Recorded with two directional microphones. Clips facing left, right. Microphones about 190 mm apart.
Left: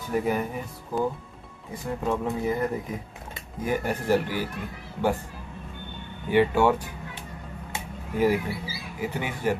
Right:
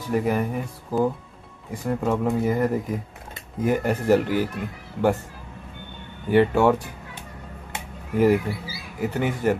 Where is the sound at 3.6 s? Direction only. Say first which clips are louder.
Right 5 dB; 50° right (ahead or behind).